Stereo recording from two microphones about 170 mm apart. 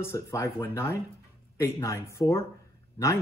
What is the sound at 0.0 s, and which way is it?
Speech, 15° left (ahead or behind).